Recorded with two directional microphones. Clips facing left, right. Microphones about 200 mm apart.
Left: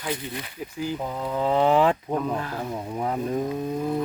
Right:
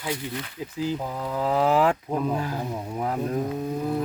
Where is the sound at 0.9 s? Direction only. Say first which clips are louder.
Left 1 dB; centre (ahead or behind).